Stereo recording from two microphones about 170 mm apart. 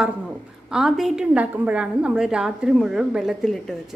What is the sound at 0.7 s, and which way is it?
A woman's voice, 5° right (ahead or behind).